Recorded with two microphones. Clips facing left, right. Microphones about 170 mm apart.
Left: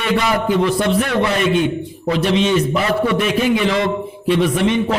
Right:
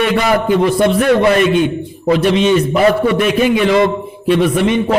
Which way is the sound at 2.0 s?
55° right (ahead or behind).